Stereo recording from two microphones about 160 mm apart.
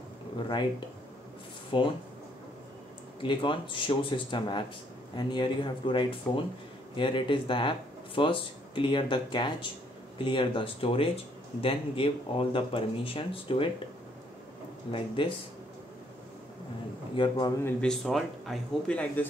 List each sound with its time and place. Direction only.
0.5 s speech: 30° left (ahead or behind)
3.2 s speech: 30° left (ahead or behind)
15.2 s speech: 30° left (ahead or behind)
17.1 s speech: 30° left (ahead or behind)
17.6 s speech: 10° left (ahead or behind)